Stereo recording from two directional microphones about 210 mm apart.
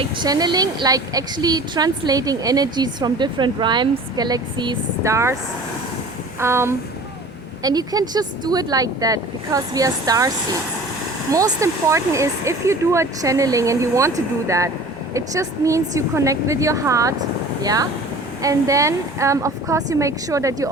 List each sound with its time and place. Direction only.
0.0 s a woman's voice: 20° right (ahead or behind)
6.4 s speech: 10° right (ahead or behind)